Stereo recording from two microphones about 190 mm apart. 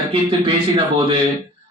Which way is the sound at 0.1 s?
25° right (ahead or behind).